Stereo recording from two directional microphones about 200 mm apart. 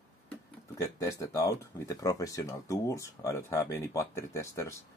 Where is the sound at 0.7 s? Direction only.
15° left (ahead or behind).